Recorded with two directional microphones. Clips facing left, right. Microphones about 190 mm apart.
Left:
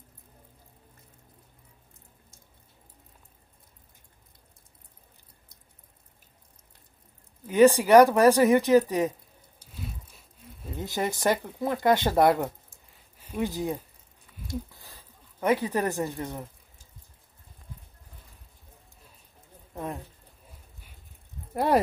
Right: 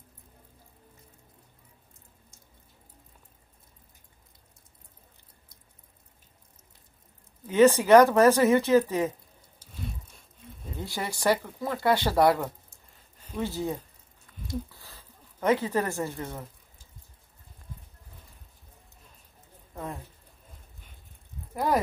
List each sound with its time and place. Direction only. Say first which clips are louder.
7.4 s speech: left 1 dB; 15° left (ahead or behind)
9.7 s squish: right 1 dB; centre (ahead or behind)
10.8 s speech: left 3 dB; 20° left (ahead or behind)
14.7 s a sound: even; 15° left (ahead or behind)
19.7 s speech: left 2 dB; 15° left (ahead or behind)